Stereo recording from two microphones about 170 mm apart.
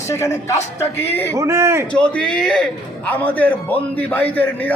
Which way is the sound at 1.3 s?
15° right (ahead or behind).